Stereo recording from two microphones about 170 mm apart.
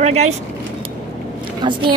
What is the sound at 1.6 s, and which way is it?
Speech, 25° right (ahead or behind).